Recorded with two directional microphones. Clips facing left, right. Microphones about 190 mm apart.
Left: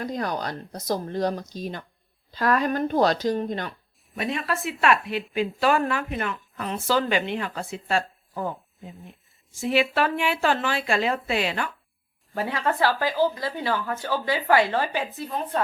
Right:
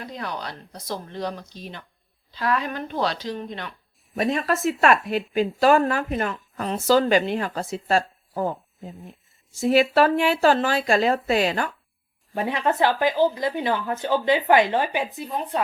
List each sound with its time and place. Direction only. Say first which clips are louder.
0.0 s speech: left 4 dB; 45° left (ahead or behind)
4.1 s a woman's voice: right 5 dB; 40° right (ahead or behind)
9.6 s a woman's voice: right 5 dB; 40° right (ahead or behind)
12.3 s speech: right 2 dB; 20° right (ahead or behind)